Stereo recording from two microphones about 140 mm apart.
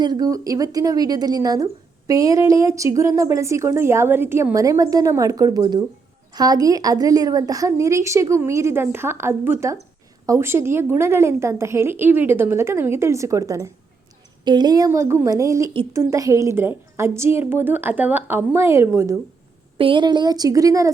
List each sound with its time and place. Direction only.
0.0 s a woman's voice: 30° right (ahead or behind)
19.8 s a woman's voice: 35° right (ahead or behind)